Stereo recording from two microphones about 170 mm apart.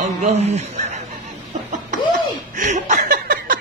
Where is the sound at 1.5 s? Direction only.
45° right (ahead or behind).